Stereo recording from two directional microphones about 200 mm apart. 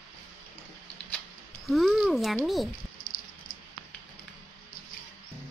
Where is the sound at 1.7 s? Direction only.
Centre (ahead or behind).